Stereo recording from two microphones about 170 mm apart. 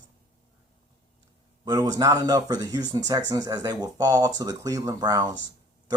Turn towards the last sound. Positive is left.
turn(degrees=-25)  # may be behind; listen again after turning